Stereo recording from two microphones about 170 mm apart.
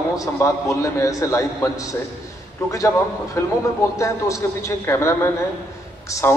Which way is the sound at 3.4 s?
15° left (ahead or behind).